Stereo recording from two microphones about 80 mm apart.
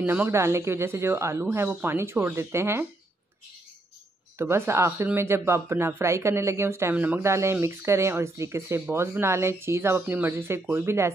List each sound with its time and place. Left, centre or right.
0.0 s speech: right
0.3 s speech: right
1.7 s speech: right
2.0 s speech: right
4.4 s speech: right
7.2 s speech: right